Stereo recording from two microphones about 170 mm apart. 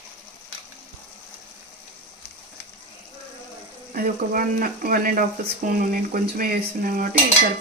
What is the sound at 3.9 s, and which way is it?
Speech, 55° right (ahead or behind).